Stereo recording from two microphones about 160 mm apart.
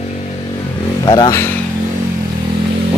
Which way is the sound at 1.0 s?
30° left (ahead or behind).